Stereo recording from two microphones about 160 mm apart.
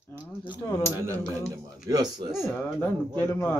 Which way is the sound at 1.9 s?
25° right (ahead or behind).